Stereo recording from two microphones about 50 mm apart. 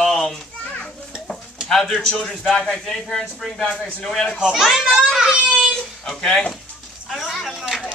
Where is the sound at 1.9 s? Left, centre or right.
Left.